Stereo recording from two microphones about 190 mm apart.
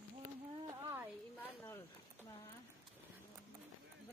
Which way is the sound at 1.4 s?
10° left (ahead or behind).